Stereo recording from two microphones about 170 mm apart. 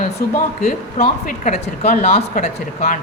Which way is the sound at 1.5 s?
40° left (ahead or behind).